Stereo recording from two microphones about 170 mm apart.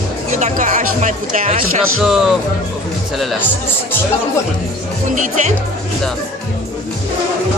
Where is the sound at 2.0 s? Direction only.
Centre (ahead or behind).